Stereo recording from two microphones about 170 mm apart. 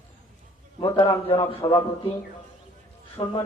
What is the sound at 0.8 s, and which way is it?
Speech, 25° left (ahead or behind).